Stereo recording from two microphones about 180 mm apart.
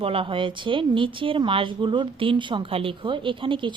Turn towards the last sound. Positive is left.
turn(degrees=-25)  # may be behind; listen again after turning